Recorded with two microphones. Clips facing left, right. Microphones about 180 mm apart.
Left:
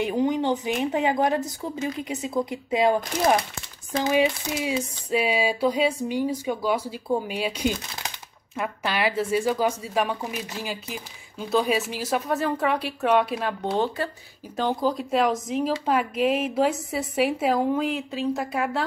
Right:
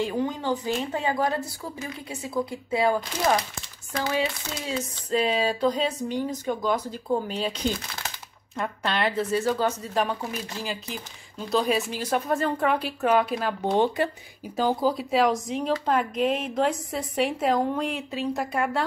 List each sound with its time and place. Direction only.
0.0 s speech: 20° left (ahead or behind); by 13.6 s centre (ahead or behind)
13.7 s speech: 20° right (ahead or behind)
14.6 s speech: 5° right (ahead or behind)